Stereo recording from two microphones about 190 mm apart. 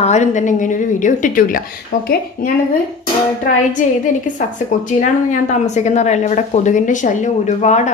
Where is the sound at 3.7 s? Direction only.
40° left (ahead or behind).